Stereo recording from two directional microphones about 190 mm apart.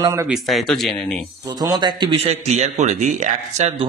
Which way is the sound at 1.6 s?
20° right (ahead or behind).